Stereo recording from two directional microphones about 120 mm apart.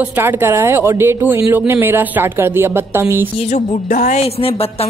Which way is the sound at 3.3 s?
70° left (ahead or behind).